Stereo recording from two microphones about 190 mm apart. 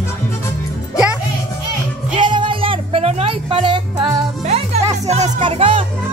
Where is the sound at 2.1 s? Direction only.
25° right (ahead or behind).